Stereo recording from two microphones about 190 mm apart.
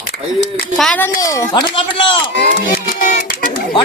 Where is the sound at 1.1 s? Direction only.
15° left (ahead or behind).